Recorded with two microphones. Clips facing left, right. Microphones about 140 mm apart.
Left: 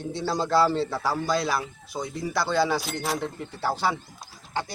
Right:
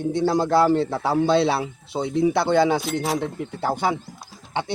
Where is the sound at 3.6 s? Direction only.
20° right (ahead or behind).